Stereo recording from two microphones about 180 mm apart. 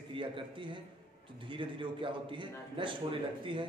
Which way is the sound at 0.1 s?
30° right (ahead or behind).